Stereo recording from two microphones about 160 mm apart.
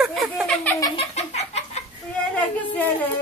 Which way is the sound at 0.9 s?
40° left (ahead or behind).